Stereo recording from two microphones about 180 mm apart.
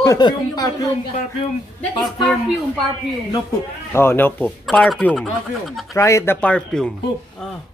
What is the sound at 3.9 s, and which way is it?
Speech, 15° left (ahead or behind).